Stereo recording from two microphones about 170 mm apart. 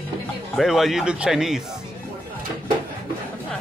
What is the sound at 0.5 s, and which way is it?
Speech, centre (ahead or behind).